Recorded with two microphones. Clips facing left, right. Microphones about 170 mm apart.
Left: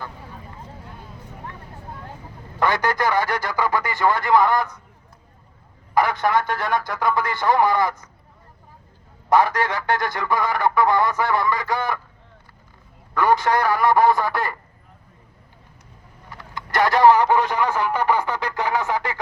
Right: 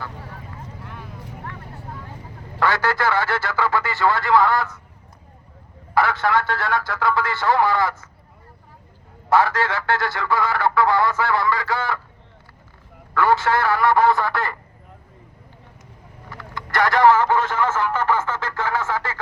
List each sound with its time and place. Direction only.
0.8 s vehicle: 70° right (ahead or behind)
2.6 s speech: 20° left (ahead or behind)
5.9 s speech: 15° left (ahead or behind)
9.3 s speech: 15° left (ahead or behind)
13.1 s speech: 15° left (ahead or behind)
16.3 s a sound: 20° left (ahead or behind)